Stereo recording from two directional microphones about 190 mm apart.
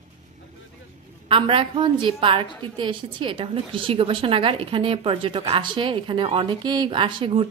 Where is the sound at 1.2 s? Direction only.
25° right (ahead or behind).